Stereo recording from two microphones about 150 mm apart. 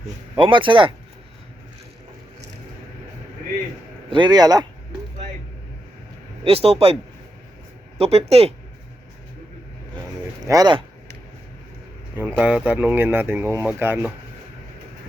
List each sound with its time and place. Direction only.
0.3 s speech: 35° right (ahead or behind)
4.1 s speech: 30° right (ahead or behind)
6.4 s speech: 40° right (ahead or behind)
7.9 s speech: 45° right (ahead or behind)
10.4 s speech: 25° right (ahead or behind)
12.1 s speech: 10° right (ahead or behind)